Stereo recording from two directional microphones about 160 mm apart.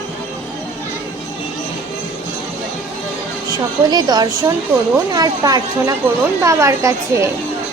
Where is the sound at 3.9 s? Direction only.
25° right (ahead or behind).